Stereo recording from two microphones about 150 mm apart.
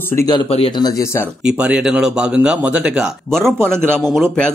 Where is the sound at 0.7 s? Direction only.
25° left (ahead or behind).